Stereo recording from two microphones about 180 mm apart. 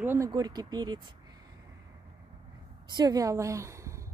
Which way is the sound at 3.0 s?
20° right (ahead or behind).